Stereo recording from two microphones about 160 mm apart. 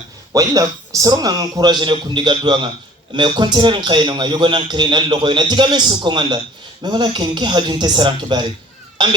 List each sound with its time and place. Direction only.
0.3 s a man's voice: 20° right (ahead or behind)